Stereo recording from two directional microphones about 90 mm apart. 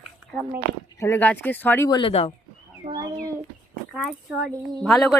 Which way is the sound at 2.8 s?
90° right.